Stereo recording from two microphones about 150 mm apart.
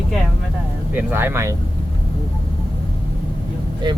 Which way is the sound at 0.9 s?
15° right (ahead or behind).